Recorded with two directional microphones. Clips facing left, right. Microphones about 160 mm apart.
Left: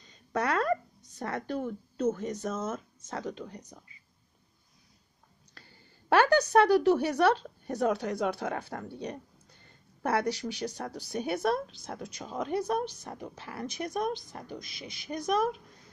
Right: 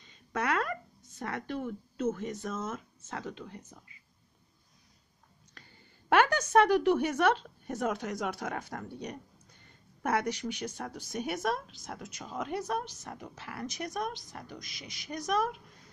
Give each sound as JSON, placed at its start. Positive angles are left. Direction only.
{"t": 0.0, "sound": "a woman's voice", "side_deg": 35}
{"t": 6.0, "sound": "a woman's voice", "side_deg": 35}